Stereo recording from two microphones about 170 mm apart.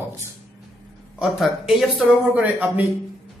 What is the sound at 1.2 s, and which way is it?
Speech, centre (ahead or behind).